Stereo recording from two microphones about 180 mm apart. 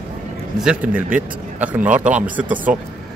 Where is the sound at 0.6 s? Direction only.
5° right (ahead or behind).